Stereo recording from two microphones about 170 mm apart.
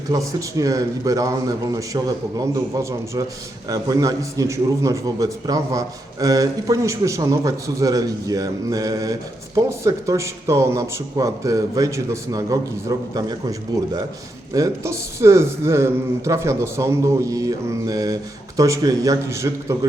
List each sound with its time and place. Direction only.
0.1 s a man's voice: 20° right (ahead or behind)